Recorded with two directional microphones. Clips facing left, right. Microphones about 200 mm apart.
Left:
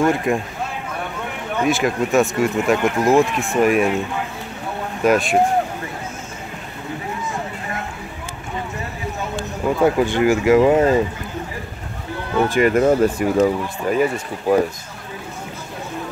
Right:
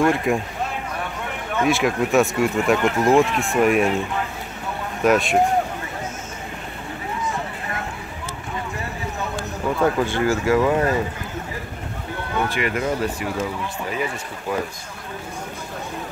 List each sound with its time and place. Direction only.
0.0 s speech: centre (ahead or behind)
1.6 s speech: centre (ahead or behind)
5.0 s speech: centre (ahead or behind)
9.8 s speech: 15° left (ahead or behind)
12.4 s speech: 45° left (ahead or behind)